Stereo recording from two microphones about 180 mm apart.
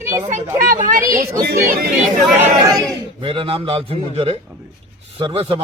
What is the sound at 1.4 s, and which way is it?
Speech, 55° right (ahead or behind).